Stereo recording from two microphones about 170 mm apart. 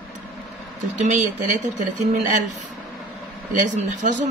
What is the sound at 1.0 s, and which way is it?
Speech, 45° right (ahead or behind).